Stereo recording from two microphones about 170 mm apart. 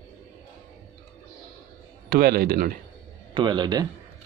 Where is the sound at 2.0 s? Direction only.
65° right (ahead or behind).